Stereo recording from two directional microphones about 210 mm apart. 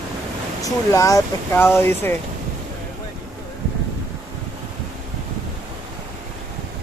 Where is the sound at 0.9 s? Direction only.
15° left (ahead or behind).